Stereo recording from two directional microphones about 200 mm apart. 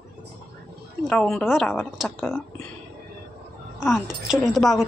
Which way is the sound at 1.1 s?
5° left (ahead or behind).